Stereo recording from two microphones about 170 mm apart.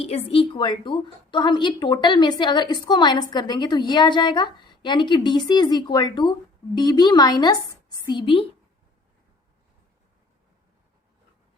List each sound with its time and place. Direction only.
0.0 s a woman's voice: 35° left (ahead or behind)